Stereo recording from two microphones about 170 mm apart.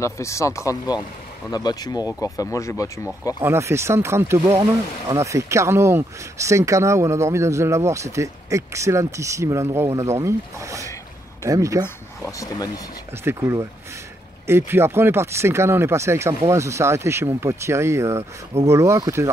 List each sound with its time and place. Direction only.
0.0 s speech: 15° left (ahead or behind)
3.3 s speech: 15° right (ahead or behind)
11.8 s speech: 20° left (ahead or behind)
13.2 s speech: 15° right (ahead or behind)